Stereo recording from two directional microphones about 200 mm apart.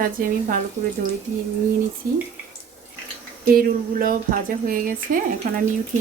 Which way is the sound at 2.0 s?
45° right (ahead or behind).